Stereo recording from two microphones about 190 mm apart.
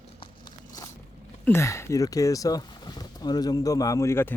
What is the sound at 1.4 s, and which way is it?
Speech, 15° left (ahead or behind).